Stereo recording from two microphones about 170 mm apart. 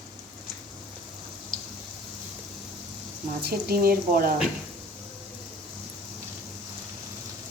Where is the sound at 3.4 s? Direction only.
65° right (ahead or behind).